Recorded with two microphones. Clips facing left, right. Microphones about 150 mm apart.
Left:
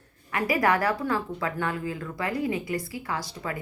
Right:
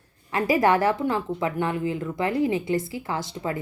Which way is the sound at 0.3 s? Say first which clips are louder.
Right 4 dB; 25° right (ahead or behind).